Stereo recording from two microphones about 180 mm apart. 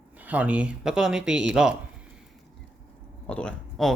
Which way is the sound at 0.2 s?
10° right (ahead or behind).